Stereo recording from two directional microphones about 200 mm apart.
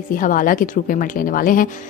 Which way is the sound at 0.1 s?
40° left (ahead or behind).